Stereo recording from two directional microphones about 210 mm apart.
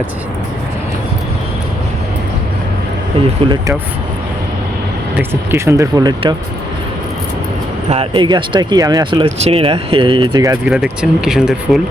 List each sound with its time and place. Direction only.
3.4 s speech: 25° right (ahead or behind)
5.1 s speech: 10° right (ahead or behind)
7.9 s speech: 25° right (ahead or behind)
11.0 s speech: 5° right (ahead or behind)